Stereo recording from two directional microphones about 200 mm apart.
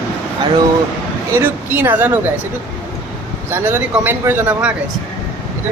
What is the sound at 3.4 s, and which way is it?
Speech, 10° right (ahead or behind).